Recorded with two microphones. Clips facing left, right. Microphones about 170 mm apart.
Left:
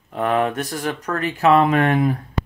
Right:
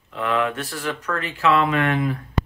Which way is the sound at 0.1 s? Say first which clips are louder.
Left 3 dB; 40° left (ahead or behind).